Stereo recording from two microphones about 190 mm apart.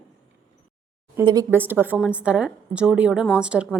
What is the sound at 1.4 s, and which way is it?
A woman's voice, 10° right (ahead or behind).